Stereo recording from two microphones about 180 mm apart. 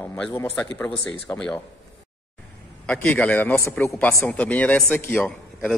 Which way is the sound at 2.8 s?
10° left (ahead or behind).